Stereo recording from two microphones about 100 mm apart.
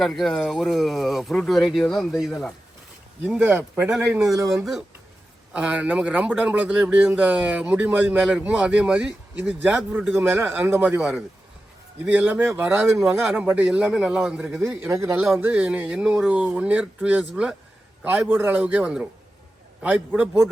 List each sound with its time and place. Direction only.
0.0 s speech: centre (ahead or behind)
3.2 s speech: 10° right (ahead or behind)
5.5 s speech: 10° right (ahead or behind)
14.8 s speech: 30° right (ahead or behind)
15.4 s speech: 15° right (ahead or behind)